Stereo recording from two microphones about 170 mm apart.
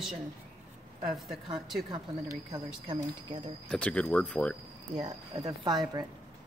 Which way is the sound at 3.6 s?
5° left (ahead or behind).